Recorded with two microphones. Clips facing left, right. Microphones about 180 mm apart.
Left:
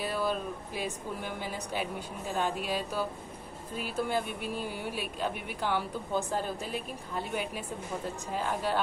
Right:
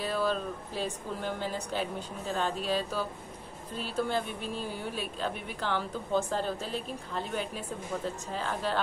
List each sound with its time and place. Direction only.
0.0 s speech: 10° left (ahead or behind)